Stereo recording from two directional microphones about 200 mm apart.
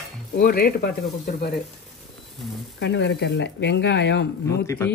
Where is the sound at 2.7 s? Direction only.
60° left (ahead or behind).